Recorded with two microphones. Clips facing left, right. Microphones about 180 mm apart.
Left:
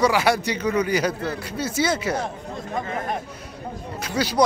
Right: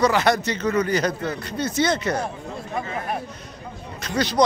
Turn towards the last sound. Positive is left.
turn(degrees=10)  # may be behind; listen again after turning